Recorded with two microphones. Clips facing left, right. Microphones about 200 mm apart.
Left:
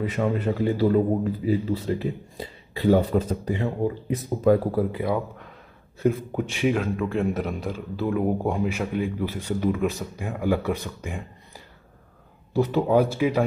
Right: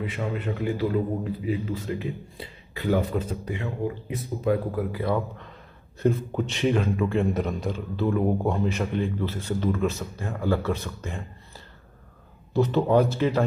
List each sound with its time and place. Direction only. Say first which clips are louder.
0.4 s a man's voice: left 2 dB; 35° left (ahead or behind)
5.0 s a man's voice: even; 10° left (ahead or behind)
12.5 s speech: even; 10° left (ahead or behind)